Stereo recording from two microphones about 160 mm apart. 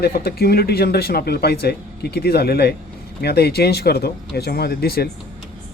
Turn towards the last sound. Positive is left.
turn(degrees=75)  # may be behind; listen again after turning